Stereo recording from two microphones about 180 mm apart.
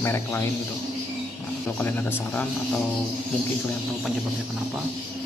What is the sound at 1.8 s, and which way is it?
Speech, 10° left (ahead or behind).